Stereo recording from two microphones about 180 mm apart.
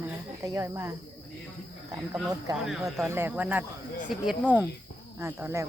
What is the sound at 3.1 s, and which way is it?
Speech, 10° right (ahead or behind).